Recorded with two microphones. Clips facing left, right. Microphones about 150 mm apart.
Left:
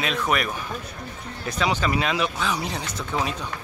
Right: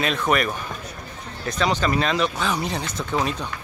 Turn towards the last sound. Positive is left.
turn(degrees=0)  # may be behind; listen again after turning